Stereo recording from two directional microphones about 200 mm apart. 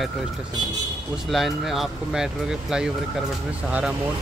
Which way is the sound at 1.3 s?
Centre (ahead or behind).